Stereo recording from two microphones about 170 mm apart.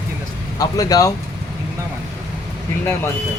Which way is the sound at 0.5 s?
20° left (ahead or behind).